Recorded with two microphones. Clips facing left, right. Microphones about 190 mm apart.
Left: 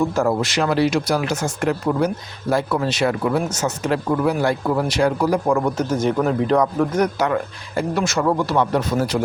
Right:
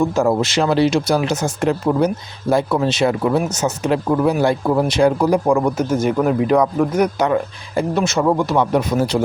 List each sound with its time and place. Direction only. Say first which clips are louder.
0.2 s speech: right 4 dB; 15° right (ahead or behind)
0.4 s speech: right 3 dB; 25° right (ahead or behind)
5.5 s speech: right 3 dB; 10° right (ahead or behind)